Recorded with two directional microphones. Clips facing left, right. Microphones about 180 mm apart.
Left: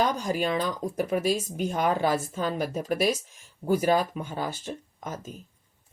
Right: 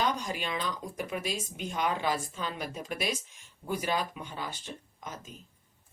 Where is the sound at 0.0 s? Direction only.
40° left (ahead or behind).